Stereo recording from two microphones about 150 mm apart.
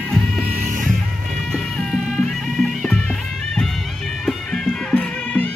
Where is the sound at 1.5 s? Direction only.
5° left (ahead or behind).